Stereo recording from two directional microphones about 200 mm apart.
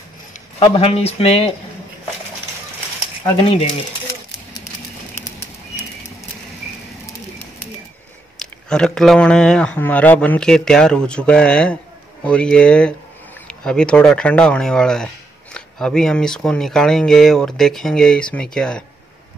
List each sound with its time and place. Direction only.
0.6 s speech: 30° left (ahead or behind)
8.4 s speech: 5° left (ahead or behind)